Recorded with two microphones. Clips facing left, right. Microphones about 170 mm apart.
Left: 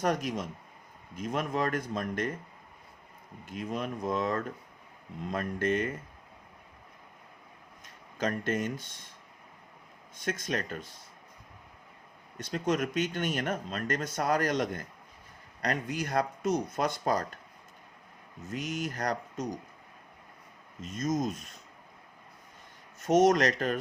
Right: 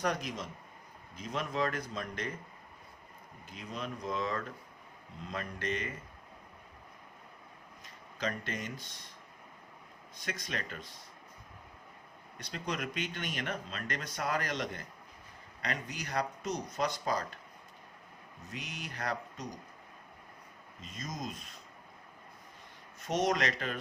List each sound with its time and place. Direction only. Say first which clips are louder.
0.0 s speech: left 5 dB; 45° left (ahead or behind)
3.4 s speech: left 7 dB; 50° left (ahead or behind)
8.2 s speech: left 7 dB; 50° left (ahead or behind)
10.2 s speech: left 7 dB; 45° left (ahead or behind)
12.4 s speech: left 8 dB; 45° left (ahead or behind)
18.5 s speech: left 10 dB; 45° left (ahead or behind)
20.8 s speech: left 11 dB; 45° left (ahead or behind)
23.0 s speech: left 8 dB; 45° left (ahead or behind)